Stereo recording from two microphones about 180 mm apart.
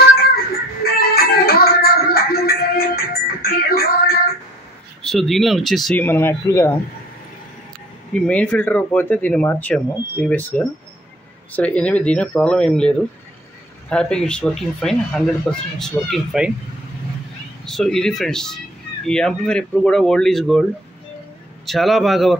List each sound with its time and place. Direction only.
0.9 s music: 55° left (ahead or behind)
5.0 s speech: centre (ahead or behind)
8.1 s speech: 5° left (ahead or behind)
17.6 s speech: centre (ahead or behind)
21.6 s speech: centre (ahead or behind)